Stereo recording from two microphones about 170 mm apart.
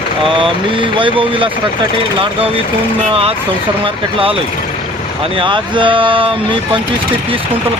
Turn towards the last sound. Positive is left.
turn(degrees=-30)  # may be behind; listen again after turning